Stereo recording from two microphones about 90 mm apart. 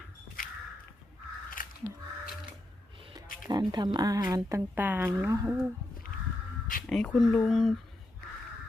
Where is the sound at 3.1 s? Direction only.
50° right (ahead or behind).